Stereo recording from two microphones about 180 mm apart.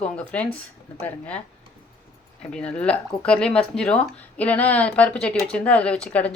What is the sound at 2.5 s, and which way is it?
Speech, 5° left (ahead or behind).